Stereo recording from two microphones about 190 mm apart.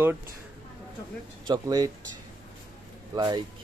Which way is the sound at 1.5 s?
20° right (ahead or behind).